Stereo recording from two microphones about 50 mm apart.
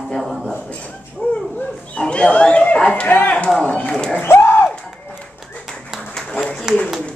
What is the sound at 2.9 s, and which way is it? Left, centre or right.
Speech, left.